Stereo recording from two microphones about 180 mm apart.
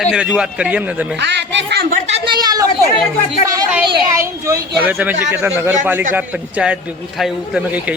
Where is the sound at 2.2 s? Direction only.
25° right (ahead or behind).